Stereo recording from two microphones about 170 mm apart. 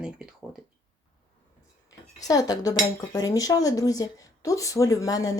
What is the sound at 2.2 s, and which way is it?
Speech, 20° left (ahead or behind).